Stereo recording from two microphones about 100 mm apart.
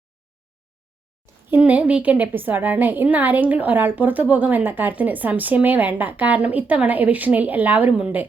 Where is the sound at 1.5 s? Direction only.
15° right (ahead or behind).